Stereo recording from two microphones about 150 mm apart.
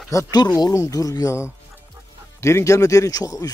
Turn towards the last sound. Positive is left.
turn(degrees=25)  # may be behind; listen again after turning